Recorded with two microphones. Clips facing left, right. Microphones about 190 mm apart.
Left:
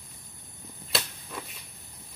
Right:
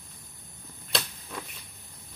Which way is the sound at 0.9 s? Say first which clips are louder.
Even; 5° left (ahead or behind).